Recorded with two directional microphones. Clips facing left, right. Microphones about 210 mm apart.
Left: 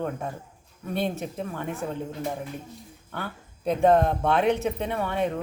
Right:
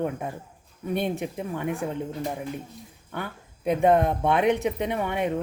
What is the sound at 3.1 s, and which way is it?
A woman's voice, 15° right (ahead or behind).